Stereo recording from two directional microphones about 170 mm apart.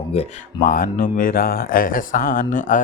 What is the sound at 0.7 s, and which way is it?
Speech, 55° left (ahead or behind).